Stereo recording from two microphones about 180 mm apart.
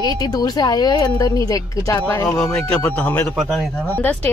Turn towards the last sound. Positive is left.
turn(degrees=10)  # may be behind; listen again after turning